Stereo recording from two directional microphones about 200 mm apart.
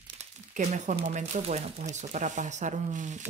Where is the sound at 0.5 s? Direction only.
35° right (ahead or behind).